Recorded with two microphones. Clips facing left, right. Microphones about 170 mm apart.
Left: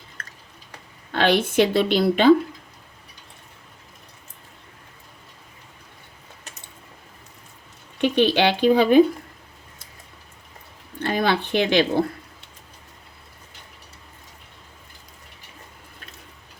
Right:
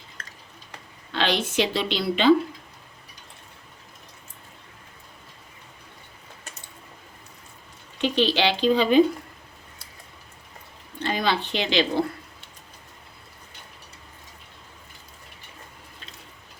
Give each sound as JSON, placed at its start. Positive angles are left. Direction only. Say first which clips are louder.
{"t": 0.2, "sound": "a sound", "louder": "left 2 dB", "side_deg": 50}
{"t": 1.1, "sound": "speech", "louder": "left 5 dB", "side_deg": 55}
{"t": 7.9, "sound": "speech", "louder": "left 4 dB", "side_deg": 55}
{"t": 11.0, "sound": "speech", "louder": "left 3 dB", "side_deg": 55}